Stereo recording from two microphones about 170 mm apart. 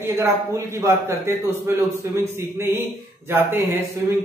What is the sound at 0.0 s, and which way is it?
Speech, 15° right (ahead or behind).